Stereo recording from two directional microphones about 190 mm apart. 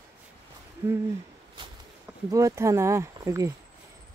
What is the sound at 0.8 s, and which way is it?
Speech, 10° right (ahead or behind).